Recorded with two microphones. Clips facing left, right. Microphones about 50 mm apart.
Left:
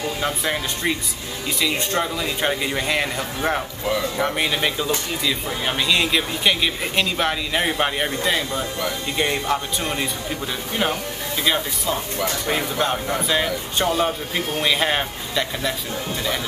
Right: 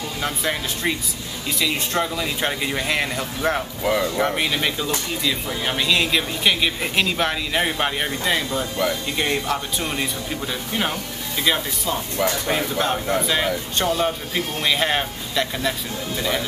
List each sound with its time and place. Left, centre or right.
0.2 s speech: centre
11.4 s speech: centre